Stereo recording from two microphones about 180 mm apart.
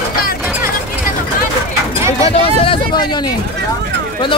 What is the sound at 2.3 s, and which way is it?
Speech, 30° left (ahead or behind).